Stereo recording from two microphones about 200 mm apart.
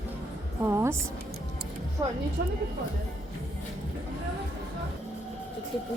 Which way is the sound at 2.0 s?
20° right (ahead or behind).